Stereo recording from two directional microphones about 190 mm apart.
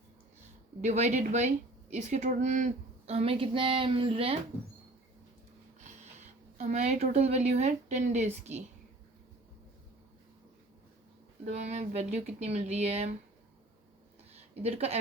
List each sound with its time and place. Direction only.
0.8 s speech: 35° right (ahead or behind)
5.8 s speech: 35° right (ahead or behind)
11.4 s speech: 35° right (ahead or behind)
14.3 s speech: 35° right (ahead or behind)